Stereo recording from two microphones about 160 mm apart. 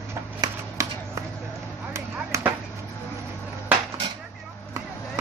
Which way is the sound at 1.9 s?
15° right (ahead or behind).